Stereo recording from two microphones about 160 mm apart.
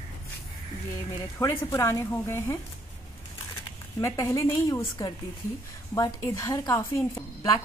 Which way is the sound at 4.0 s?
20° left (ahead or behind).